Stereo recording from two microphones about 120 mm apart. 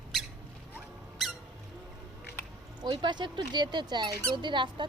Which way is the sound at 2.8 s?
40° right (ahead or behind).